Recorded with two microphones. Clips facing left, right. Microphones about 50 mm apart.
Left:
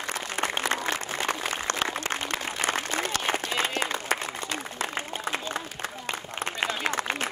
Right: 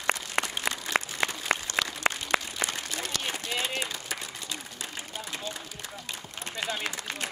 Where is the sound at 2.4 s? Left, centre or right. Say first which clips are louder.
Left 6 dB; left.